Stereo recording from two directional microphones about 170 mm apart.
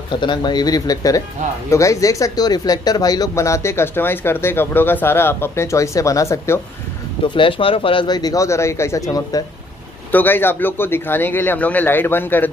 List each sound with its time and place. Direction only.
0.1 s speech: 25° left (ahead or behind)
7.2 s speech: 30° left (ahead or behind); by 12.4 s 10° left (ahead or behind)